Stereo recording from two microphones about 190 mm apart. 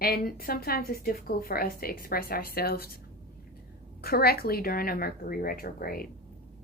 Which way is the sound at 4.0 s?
55° left (ahead or behind).